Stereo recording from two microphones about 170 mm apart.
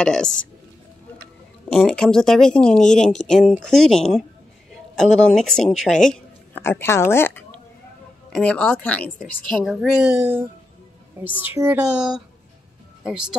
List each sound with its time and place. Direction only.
0.0 s speech: 5° left (ahead or behind)
1.7 s speech: centre (ahead or behind)
11.4 s speech: 10° right (ahead or behind)